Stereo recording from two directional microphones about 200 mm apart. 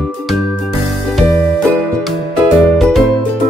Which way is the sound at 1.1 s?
Centre (ahead or behind).